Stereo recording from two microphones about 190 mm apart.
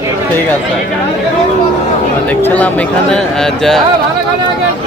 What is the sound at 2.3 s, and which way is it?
Speech, 10° left (ahead or behind).